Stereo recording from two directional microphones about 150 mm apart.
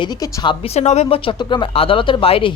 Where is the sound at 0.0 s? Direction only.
25° left (ahead or behind).